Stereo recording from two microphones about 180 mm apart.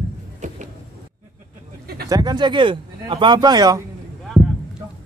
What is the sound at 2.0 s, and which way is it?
Speech, 20° right (ahead or behind).